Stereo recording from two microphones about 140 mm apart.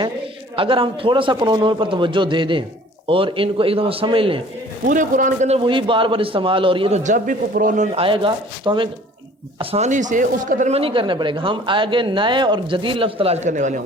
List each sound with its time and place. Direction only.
0.5 s speech: 40° right (ahead or behind)
4.9 s speech: 65° right (ahead or behind)
5.5 s speech: 35° right (ahead or behind)
7.0 s a man's voice: 70° right (ahead or behind)
7.9 s speech: 40° right (ahead or behind)
9.6 s speech: 50° right (ahead or behind)
10.8 s speech: 40° right (ahead or behind); by 13.8 s 65° right (ahead or behind)